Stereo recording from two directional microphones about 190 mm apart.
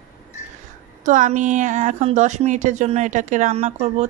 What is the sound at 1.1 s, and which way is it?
A woman's voice, 40° right (ahead or behind).